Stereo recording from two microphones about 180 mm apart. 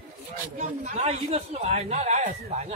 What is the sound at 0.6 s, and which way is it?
Speech, 40° right (ahead or behind).